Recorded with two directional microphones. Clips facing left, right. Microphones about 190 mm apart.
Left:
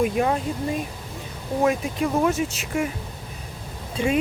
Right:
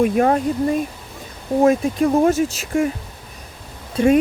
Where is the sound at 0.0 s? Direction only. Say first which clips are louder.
Right 6 dB; 50° right (ahead or behind).